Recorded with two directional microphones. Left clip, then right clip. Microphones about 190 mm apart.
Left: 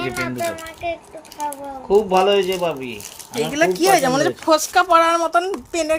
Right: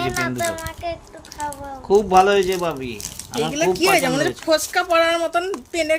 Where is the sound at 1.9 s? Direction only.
45° right (ahead or behind).